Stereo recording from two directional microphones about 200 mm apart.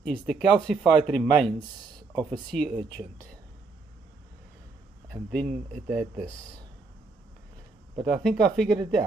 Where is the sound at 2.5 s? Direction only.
Centre (ahead or behind).